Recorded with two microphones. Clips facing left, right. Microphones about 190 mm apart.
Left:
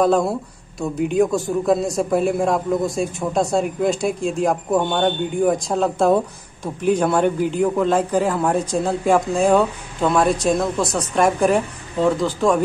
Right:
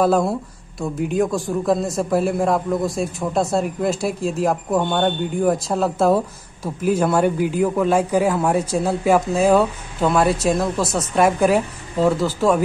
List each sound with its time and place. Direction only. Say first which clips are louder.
0.0 s a man's voice: even; 5° right (ahead or behind)